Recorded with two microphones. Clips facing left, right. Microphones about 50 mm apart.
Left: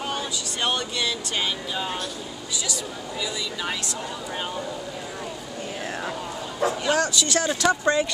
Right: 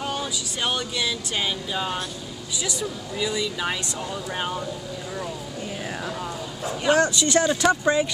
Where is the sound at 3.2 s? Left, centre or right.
Centre.